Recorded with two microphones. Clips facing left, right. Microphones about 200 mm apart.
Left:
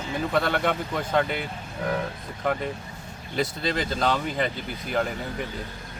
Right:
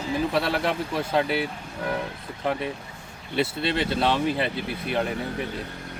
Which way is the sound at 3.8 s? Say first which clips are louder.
Right 2 dB; 5° right (ahead or behind).